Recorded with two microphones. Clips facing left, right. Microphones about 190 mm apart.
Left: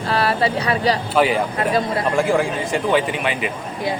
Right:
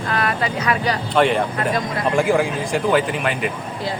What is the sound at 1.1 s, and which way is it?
Speech, 5° left (ahead or behind).